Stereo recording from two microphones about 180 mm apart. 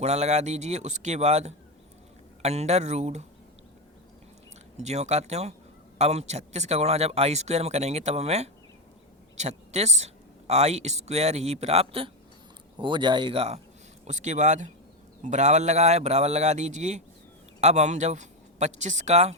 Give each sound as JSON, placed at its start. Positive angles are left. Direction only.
{"t": 0.0, "sound": "speech", "side_deg": -40}
{"t": 4.8, "sound": "speech", "side_deg": -40}